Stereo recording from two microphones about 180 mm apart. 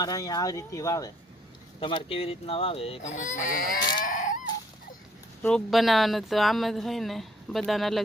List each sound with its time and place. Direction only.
0.0 s speech: 20° left (ahead or behind)
1.8 s fowl: 30° left (ahead or behind); by 4.4 s 45° left (ahead or behind)
5.4 s speech: 5° left (ahead or behind)